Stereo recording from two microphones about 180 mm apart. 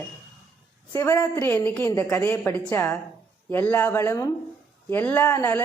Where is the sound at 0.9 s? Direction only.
15° left (ahead or behind).